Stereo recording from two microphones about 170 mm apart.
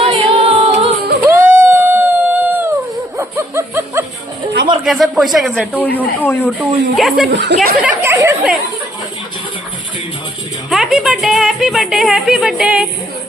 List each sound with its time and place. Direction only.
0.0 s music: 35° right (ahead or behind)
1.2 s a sound: 15° right (ahead or behind)
4.9 s speech: centre (ahead or behind)
6.9 s speech: centre (ahead or behind)
7.3 s speech: 85° right
8.0 s chatter: 15° right (ahead or behind)
10.7 s speech: 5° right (ahead or behind)